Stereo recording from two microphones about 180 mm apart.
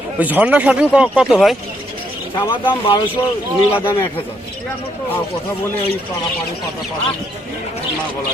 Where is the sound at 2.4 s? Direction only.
30° left (ahead or behind).